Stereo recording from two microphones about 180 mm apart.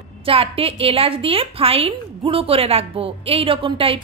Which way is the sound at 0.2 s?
30° right (ahead or behind).